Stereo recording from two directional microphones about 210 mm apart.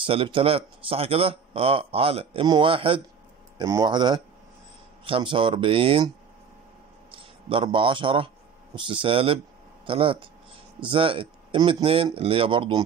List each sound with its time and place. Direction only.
0.0 s a man's voice: 25° right (ahead or behind)